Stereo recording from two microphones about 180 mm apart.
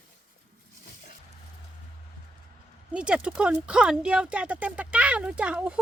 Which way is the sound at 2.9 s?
5° right (ahead or behind).